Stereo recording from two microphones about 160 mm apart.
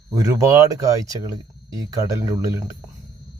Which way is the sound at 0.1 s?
20° right (ahead or behind).